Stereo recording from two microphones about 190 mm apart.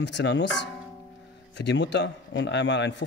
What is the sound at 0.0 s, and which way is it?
Speech, 70° left (ahead or behind).